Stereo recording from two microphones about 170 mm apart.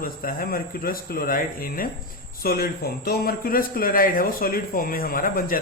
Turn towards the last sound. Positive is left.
turn(degrees=55)  # may be behind; listen again after turning